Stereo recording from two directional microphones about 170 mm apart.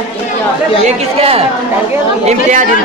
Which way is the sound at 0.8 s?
35° right (ahead or behind).